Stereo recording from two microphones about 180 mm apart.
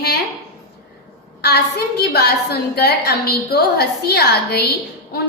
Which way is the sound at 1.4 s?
60° left (ahead or behind).